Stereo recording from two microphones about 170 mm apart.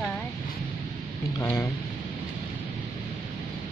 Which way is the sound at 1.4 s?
10° left (ahead or behind).